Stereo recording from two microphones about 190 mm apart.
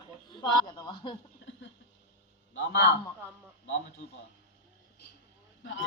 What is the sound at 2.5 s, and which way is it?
Speech, 75° left (ahead or behind).